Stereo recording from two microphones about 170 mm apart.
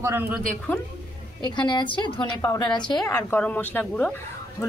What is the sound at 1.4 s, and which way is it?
A woman's voice, 25° left (ahead or behind).